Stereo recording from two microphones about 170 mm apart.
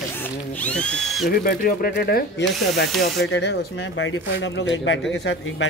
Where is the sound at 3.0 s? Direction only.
90° left.